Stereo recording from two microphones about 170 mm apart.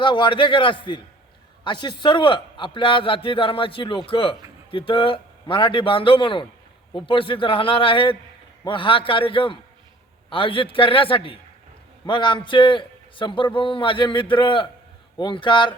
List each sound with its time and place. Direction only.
0.0 s a man's voice: 30° left (ahead or behind)